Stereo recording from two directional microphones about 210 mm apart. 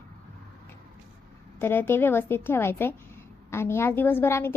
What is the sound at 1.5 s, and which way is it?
A woman's voice, 10° left (ahead or behind).